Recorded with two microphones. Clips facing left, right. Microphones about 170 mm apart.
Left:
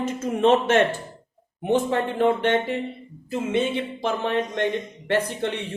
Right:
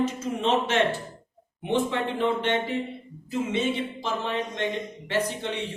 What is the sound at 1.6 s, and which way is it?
Speech, 45° left (ahead or behind).